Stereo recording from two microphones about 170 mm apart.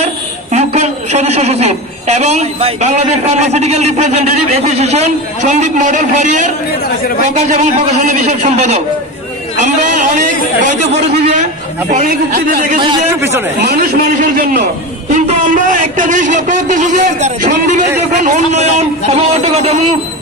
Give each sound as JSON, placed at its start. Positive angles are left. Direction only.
{"t": 0.5, "sound": "a woman's voice", "side_deg": -40}
{"t": 10.6, "sound": "a man's voice", "side_deg": -45}
{"t": 13.1, "sound": "speech", "side_deg": -15}
{"t": 14.2, "sound": "a man's voice", "side_deg": -55}
{"t": 15.0, "sound": "a man's voice", "side_deg": -45}